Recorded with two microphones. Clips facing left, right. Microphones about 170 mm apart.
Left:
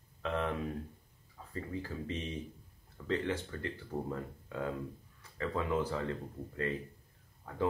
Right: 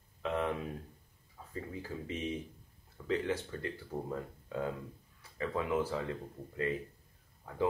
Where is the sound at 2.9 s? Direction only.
10° right (ahead or behind).